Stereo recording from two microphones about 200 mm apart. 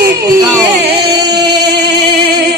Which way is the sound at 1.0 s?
55° right (ahead or behind).